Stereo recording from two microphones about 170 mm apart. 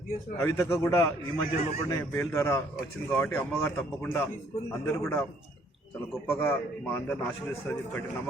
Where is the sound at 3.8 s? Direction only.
10° left (ahead or behind).